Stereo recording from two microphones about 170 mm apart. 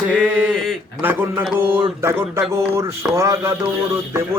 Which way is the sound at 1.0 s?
10° right (ahead or behind).